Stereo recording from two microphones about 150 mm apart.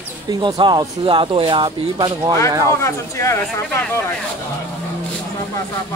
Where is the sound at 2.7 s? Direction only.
20° left (ahead or behind).